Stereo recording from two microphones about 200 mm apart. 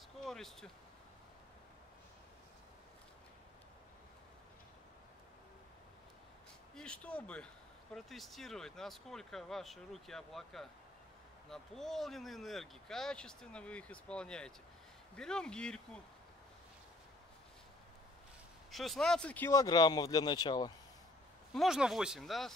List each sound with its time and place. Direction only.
0.2 s speech: centre (ahead or behind)
6.7 s speech: 5° left (ahead or behind)
18.7 s speech: centre (ahead or behind); by 20.7 s 20° left (ahead or behind)
21.5 s speech: 5° right (ahead or behind)